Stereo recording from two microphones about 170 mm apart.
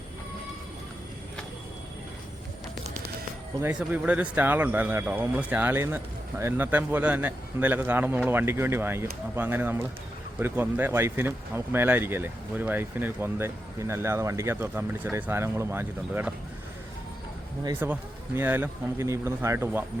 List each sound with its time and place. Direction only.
3.6 s speech: 10° right (ahead or behind)
17.6 s speech: 20° right (ahead or behind)